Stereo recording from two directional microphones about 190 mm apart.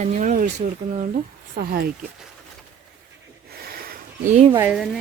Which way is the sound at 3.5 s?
55° right (ahead or behind).